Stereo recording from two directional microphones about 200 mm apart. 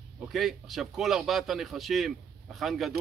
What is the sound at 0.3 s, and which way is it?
A man's voice, centre (ahead or behind).